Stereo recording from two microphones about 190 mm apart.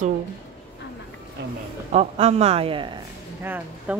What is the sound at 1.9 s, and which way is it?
Speech, 35° right (ahead or behind).